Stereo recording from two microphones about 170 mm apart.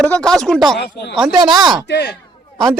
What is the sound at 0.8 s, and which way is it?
Speech, 80° left.